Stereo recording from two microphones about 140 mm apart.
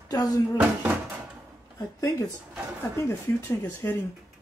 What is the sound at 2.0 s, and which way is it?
Speech, 25° left (ahead or behind).